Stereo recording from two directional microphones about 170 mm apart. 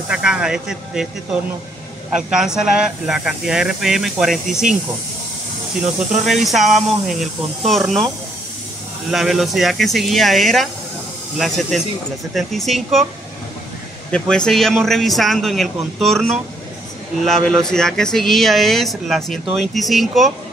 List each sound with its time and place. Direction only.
0.1 s speech: 5° right (ahead or behind)
5.8 s speech: centre (ahead or behind)
9.1 s speech: centre (ahead or behind)
14.1 s speech: 5° left (ahead or behind)